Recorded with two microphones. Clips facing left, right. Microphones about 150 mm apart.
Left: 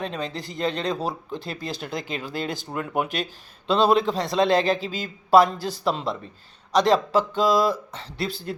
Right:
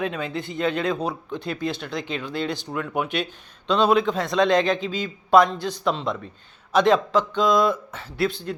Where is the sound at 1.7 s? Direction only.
45° left (ahead or behind).